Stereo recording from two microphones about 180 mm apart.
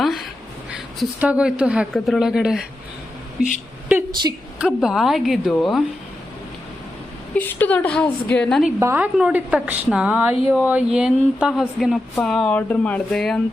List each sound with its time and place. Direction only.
0.0 s a sound: centre (ahead or behind)
0.9 s a woman's voice: 5° right (ahead or behind)
4.1 s a woman's voice: 25° right (ahead or behind)
4.5 s a woman's voice: 5° right (ahead or behind)
7.3 s a woman's voice: 10° left (ahead or behind)
8.8 s a woman's voice: 15° right (ahead or behind); by 13.4 s 5° left (ahead or behind)